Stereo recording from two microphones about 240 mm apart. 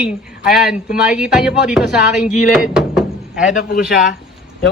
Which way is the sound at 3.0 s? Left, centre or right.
Centre.